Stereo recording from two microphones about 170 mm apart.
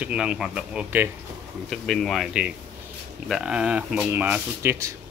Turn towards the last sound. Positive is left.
turn(degrees=-15)  # may be behind; listen again after turning